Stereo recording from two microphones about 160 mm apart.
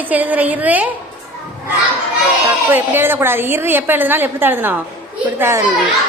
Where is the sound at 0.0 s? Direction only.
10° right (ahead or behind).